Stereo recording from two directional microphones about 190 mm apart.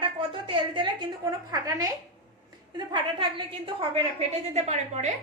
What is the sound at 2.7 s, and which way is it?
A woman's voice, 25° right (ahead or behind).